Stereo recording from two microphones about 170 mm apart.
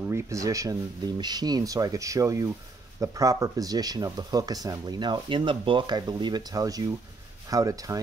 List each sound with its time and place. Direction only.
0.0 s speech: 15° right (ahead or behind)